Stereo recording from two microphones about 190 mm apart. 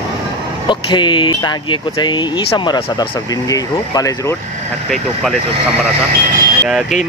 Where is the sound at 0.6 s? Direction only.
25° left (ahead or behind).